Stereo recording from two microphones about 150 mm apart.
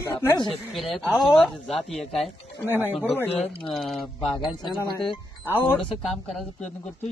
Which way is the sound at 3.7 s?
Centre (ahead or behind).